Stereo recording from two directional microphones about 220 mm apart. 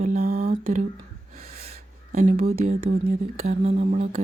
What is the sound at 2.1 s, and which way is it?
Speech, 35° right (ahead or behind).